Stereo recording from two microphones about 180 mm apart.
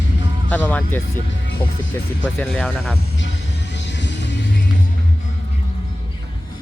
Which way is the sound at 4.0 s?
80° left.